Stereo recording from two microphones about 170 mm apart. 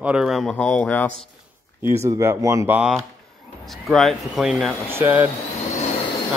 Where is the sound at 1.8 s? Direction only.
15° right (ahead or behind).